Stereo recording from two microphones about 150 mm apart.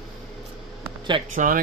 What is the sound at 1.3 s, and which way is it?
Speech, 60° right (ahead or behind).